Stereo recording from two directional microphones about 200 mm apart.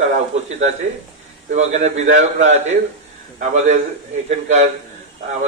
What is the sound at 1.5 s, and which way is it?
A man's voice, 35° right (ahead or behind).